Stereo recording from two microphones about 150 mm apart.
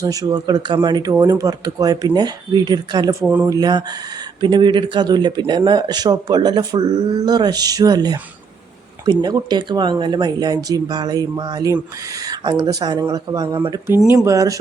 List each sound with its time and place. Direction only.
0.0 s speech: 25° right (ahead or behind)
3.5 s speech: 25° right (ahead or behind)